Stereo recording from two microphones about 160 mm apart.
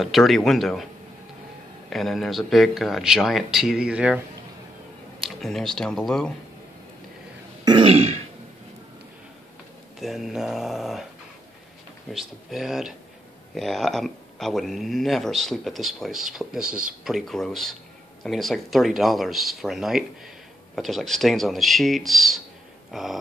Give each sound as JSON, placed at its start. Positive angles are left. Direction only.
{"t": 0.0, "sound": "speech", "side_deg": 0}
{"t": 1.9, "sound": "speech", "side_deg": 0}
{"t": 5.2, "sound": "speech", "side_deg": 0}
{"t": 7.6, "sound": "throat clearing", "side_deg": -30}
{"t": 9.9, "sound": "speech", "side_deg": 0}
{"t": 12.1, "sound": "speech", "side_deg": 0}
{"t": 22.8, "sound": "a sound", "side_deg": 0}